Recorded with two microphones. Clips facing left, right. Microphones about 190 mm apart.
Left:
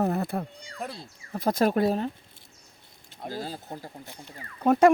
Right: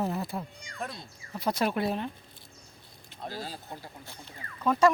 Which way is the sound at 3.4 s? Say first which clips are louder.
Left 4 dB; 45° left (ahead or behind).